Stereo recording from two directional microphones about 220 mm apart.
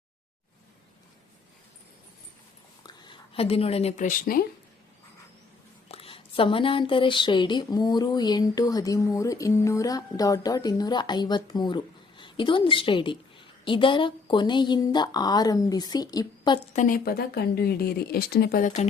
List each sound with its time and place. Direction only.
2.8 s speech: 25° left (ahead or behind); by 4.4 s 40° left (ahead or behind)
5.9 s speech: 25° left (ahead or behind)
16.7 s speech: 40° left (ahead or behind)